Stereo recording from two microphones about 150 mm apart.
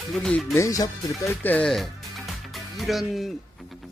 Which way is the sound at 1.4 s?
10° left (ahead or behind).